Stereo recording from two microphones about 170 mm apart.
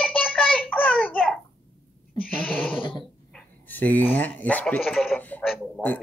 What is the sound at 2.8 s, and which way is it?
Dog, 30° left (ahead or behind).